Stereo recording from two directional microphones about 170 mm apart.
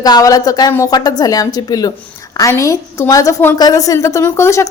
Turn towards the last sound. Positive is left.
turn(degrees=15)  # may be behind; listen again after turning